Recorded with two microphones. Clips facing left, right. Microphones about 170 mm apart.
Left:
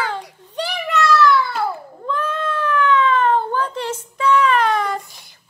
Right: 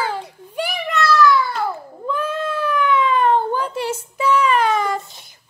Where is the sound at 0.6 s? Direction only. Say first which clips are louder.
Left 1 dB; 10° right (ahead or behind).